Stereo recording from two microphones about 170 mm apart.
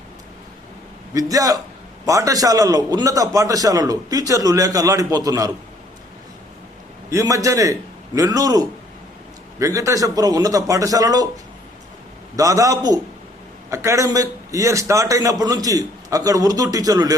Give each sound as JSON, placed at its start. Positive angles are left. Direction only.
{"t": 1.1, "sound": "a man's voice", "side_deg": -20}
{"t": 7.1, "sound": "a man's voice", "side_deg": -20}
{"t": 12.4, "sound": "a man's voice", "side_deg": -20}